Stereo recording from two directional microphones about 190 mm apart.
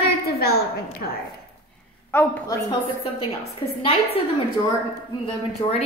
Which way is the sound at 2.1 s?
10° left (ahead or behind).